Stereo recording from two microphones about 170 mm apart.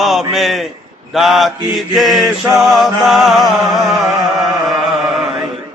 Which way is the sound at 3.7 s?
20° right (ahead or behind).